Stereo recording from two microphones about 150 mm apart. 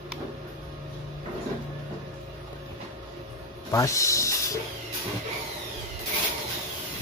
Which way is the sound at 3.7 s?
20° left (ahead or behind).